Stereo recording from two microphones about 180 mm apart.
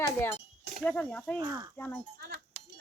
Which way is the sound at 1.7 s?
5° left (ahead or behind).